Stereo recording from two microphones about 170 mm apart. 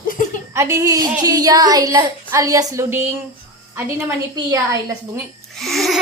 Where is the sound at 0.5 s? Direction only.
20° right (ahead or behind).